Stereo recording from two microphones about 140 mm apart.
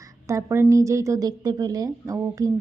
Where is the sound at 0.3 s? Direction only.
20° right (ahead or behind).